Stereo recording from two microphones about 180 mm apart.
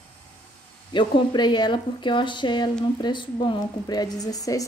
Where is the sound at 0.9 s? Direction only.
25° left (ahead or behind).